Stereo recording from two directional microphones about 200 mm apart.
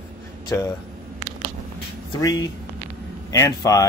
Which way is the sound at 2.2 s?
20° left (ahead or behind).